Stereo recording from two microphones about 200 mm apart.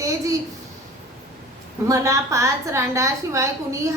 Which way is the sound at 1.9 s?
15° right (ahead or behind).